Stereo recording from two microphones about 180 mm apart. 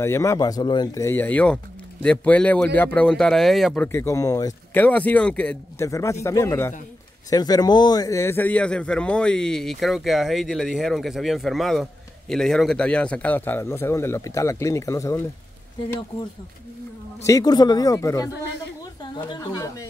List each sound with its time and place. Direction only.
0.0 s speech: 15° left (ahead or behind)
4.8 s speech: 10° left (ahead or behind)
5.9 s speech: 20° left (ahead or behind)
17.2 s speech: 20° left (ahead or behind)